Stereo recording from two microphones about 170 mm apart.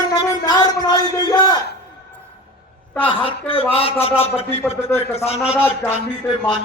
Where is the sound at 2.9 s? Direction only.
10° left (ahead or behind).